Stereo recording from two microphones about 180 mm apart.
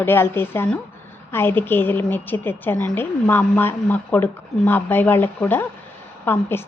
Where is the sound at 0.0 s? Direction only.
10° left (ahead or behind).